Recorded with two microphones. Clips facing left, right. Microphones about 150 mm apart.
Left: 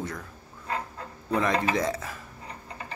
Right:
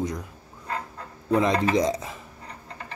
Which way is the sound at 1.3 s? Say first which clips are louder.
Right 4 dB; 15° right (ahead or behind).